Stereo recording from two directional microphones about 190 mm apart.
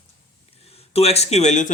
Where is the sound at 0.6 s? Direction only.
30° left (ahead or behind).